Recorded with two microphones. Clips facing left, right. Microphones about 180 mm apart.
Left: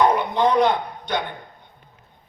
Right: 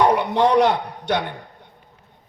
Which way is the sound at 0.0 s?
80° right.